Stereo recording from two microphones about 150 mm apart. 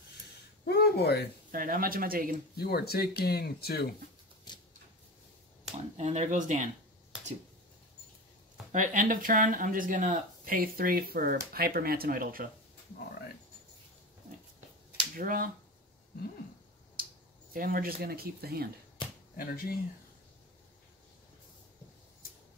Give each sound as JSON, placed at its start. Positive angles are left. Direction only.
{"t": 0.7, "sound": "a sound", "side_deg": 90}
{"t": 1.5, "sound": "speech", "side_deg": -70}
{"t": 2.5, "sound": "speech", "side_deg": 90}
{"t": 4.5, "sound": "a sound", "side_deg": 30}
{"t": 5.9, "sound": "speech", "side_deg": -50}
{"t": 8.7, "sound": "speech", "side_deg": -60}
{"t": 15.1, "sound": "speech", "side_deg": -70}
{"t": 17.6, "sound": "speech", "side_deg": -75}
{"t": 19.0, "sound": "a sound", "side_deg": 35}
{"t": 19.3, "sound": "speech", "side_deg": 80}